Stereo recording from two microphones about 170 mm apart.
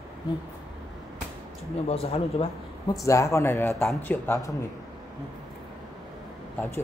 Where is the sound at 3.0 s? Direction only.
15° left (ahead or behind).